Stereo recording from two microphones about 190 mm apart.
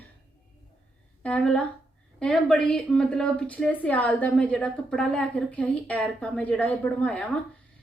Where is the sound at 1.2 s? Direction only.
5° left (ahead or behind).